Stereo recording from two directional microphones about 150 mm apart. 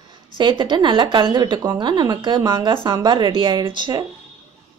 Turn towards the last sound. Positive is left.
turn(degrees=-30)  # may be behind; listen again after turning